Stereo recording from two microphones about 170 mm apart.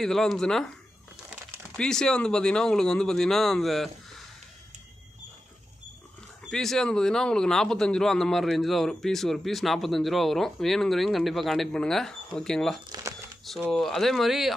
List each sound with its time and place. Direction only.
0.0 s speech: centre (ahead or behind)
1.8 s speech: 5° left (ahead or behind)
6.5 s speech: 5° left (ahead or behind)
12.9 s crumpling: 25° right (ahead or behind)
13.7 s speech: centre (ahead or behind)